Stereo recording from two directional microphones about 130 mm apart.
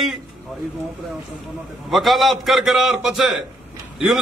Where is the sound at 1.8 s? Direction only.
Centre (ahead or behind).